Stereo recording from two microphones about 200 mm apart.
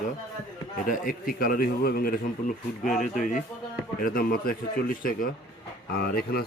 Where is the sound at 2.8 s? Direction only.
Centre (ahead or behind).